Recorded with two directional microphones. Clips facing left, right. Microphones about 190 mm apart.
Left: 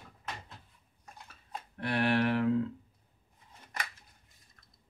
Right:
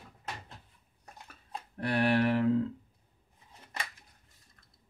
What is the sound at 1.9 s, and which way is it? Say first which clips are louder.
Speech: right 2 dB; 35° right (ahead or behind).